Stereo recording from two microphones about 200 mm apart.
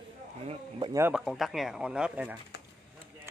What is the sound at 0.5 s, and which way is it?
Speech, 25° right (ahead or behind).